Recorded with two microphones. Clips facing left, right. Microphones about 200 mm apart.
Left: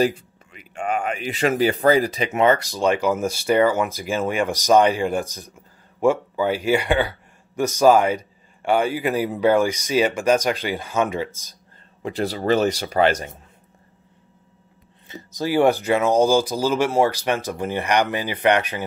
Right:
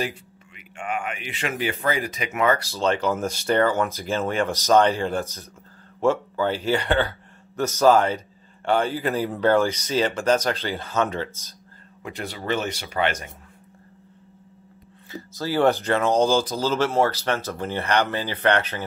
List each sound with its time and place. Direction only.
0.0 s speech: 40° left (ahead or behind); by 11.5 s 10° left (ahead or behind)
12.0 s speech: 35° left (ahead or behind)
15.0 s speech: 15° left (ahead or behind)